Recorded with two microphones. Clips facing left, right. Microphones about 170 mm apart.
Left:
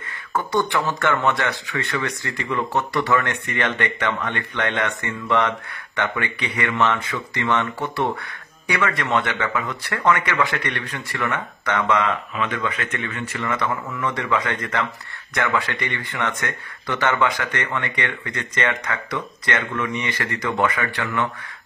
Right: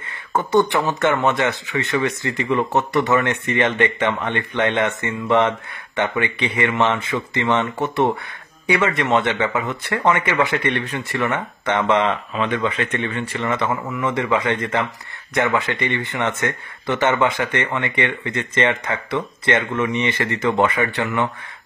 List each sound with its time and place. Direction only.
0.3 s speech: 25° right (ahead or behind)